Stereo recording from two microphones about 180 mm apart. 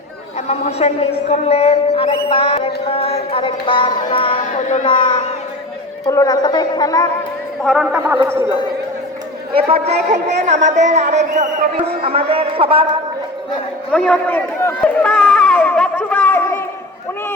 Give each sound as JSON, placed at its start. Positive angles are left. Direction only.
{"t": 0.4, "sound": "a man's voice", "side_deg": 35}
{"t": 6.1, "sound": "a woman's voice", "side_deg": 20}
{"t": 7.6, "sound": "speech", "side_deg": 0}
{"t": 9.6, "sound": "a man's voice", "side_deg": -35}
{"t": 13.9, "sound": "a sound", "side_deg": 5}